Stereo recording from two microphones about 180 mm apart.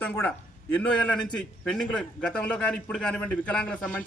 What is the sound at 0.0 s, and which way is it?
A man's voice, 10° left (ahead or behind).